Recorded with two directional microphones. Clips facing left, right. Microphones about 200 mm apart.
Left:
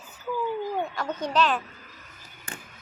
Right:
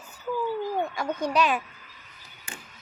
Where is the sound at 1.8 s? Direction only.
45° left (ahead or behind).